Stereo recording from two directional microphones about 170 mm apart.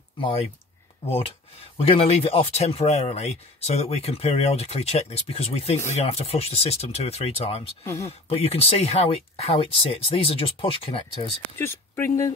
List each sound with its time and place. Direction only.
0.2 s speech: 35° left (ahead or behind)
11.5 s speech: 15° left (ahead or behind)